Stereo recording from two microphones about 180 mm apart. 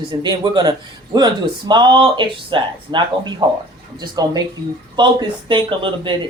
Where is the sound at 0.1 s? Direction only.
25° right (ahead or behind).